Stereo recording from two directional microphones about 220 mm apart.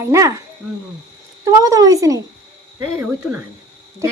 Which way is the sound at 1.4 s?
15° right (ahead or behind).